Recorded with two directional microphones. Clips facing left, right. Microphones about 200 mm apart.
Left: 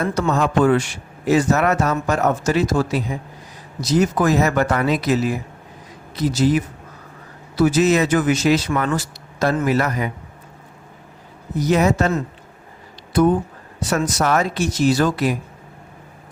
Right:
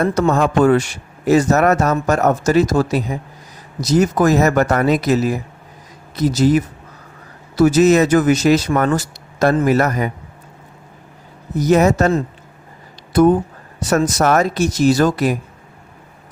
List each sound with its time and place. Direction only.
0.0 s speech: 45° right (ahead or behind)
11.6 s speech: 45° right (ahead or behind)
13.9 s speech: 45° right (ahead or behind)